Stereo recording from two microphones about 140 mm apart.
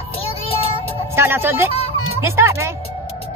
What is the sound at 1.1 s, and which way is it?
Music, 15° right (ahead or behind).